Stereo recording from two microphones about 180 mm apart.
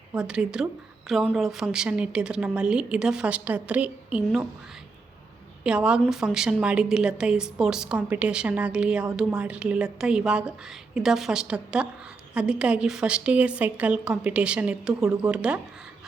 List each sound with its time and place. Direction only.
0.2 s a woman's voice: 5° right (ahead or behind)
5.6 s a woman's voice: 5° right (ahead or behind)